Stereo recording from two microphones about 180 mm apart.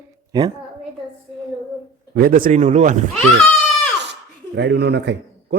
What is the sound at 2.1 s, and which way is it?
Speech, 55° right (ahead or behind).